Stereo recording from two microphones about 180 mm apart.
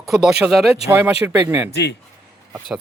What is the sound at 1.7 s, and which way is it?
Speech, 65° left (ahead or behind).